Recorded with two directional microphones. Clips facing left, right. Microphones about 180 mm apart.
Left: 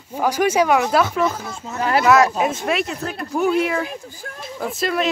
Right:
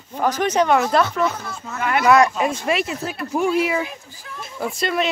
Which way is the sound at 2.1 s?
5° left (ahead or behind).